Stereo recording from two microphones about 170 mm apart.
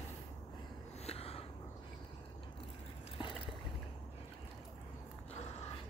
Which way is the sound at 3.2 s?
30° left (ahead or behind).